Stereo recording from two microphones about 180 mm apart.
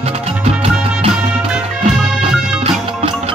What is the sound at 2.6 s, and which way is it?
Music, 30° right (ahead or behind).